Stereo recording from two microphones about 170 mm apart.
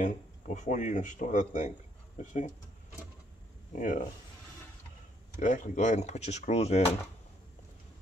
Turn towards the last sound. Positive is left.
turn(degrees=40)  # may be behind; listen again after turning